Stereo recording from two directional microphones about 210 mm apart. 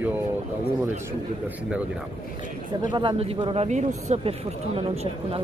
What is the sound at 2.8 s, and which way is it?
Speech, 20° right (ahead or behind).